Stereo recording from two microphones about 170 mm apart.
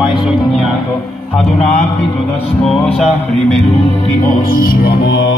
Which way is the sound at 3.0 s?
40° left (ahead or behind).